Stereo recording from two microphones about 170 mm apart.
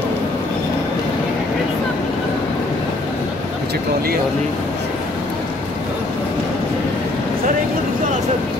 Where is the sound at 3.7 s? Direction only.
60° right (ahead or behind).